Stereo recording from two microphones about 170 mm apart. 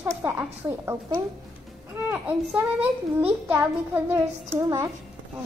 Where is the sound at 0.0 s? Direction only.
10° right (ahead or behind).